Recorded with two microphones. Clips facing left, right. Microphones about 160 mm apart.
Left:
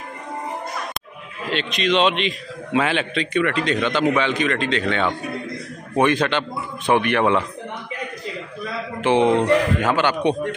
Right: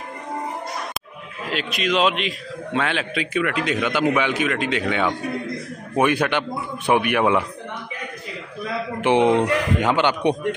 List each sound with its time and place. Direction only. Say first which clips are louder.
1.5 s a man's voice: left 2 dB; 5° right (ahead or behind)
9.0 s a man's voice: even; 15° right (ahead or behind)